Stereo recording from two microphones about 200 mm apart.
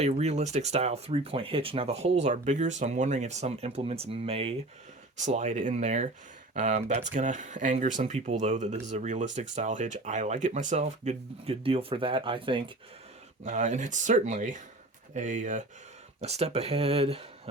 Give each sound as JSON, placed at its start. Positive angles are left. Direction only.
{"t": 0.0, "sound": "speech", "side_deg": -35}
{"t": 13.4, "sound": "speech", "side_deg": -35}